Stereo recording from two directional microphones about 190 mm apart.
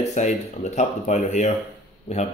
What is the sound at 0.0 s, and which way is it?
Speech, 35° left (ahead or behind).